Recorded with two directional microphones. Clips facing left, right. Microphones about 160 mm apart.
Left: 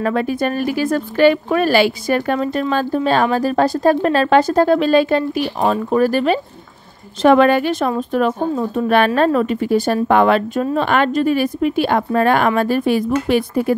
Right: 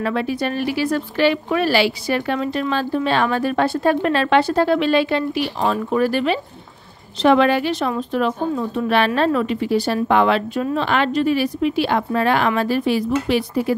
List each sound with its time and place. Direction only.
0.0 s a woman's voice: 45° left (ahead or behind)